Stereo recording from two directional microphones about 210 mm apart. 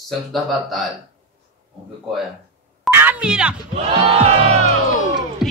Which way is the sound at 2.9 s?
10° right (ahead or behind).